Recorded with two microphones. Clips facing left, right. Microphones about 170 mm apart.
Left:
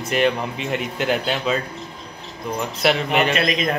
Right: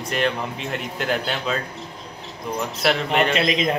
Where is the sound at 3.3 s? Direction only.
25° right (ahead or behind).